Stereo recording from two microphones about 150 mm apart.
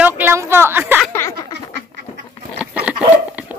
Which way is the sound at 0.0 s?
15° right (ahead or behind).